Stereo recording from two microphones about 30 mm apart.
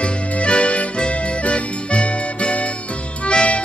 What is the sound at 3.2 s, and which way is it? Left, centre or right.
Harmonica, left.